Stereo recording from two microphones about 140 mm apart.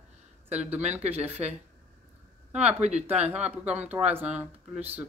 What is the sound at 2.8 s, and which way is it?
Speech, 55° right (ahead or behind).